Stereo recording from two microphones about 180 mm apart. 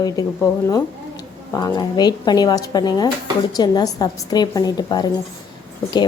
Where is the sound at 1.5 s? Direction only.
20° left (ahead or behind).